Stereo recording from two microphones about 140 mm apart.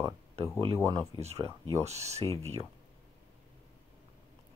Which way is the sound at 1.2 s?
50° right (ahead or behind).